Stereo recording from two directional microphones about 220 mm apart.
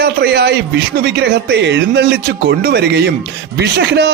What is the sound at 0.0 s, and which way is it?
A man's voice, 50° right (ahead or behind).